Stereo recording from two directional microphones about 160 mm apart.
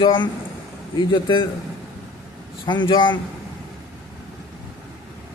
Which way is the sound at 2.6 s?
30° left (ahead or behind).